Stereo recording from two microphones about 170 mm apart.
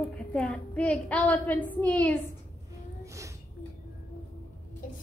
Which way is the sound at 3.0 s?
20° right (ahead or behind).